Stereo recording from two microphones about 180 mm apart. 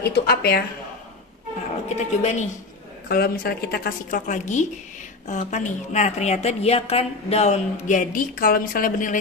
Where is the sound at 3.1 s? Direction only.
55° left (ahead or behind).